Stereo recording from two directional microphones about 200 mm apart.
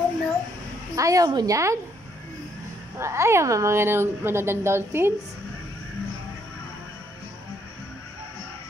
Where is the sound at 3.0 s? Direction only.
15° right (ahead or behind).